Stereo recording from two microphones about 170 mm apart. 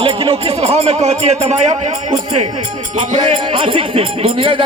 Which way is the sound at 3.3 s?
30° right (ahead or behind).